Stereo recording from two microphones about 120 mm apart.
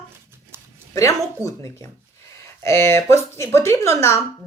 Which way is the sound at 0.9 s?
25° left (ahead or behind).